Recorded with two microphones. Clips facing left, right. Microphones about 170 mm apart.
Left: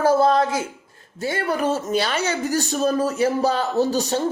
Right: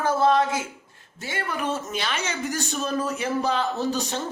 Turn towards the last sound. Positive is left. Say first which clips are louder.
# left 6 dB
turn(degrees=35)  # may be behind; listen again after turning